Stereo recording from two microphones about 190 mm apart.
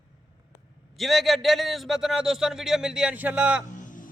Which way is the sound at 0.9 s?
Centre (ahead or behind).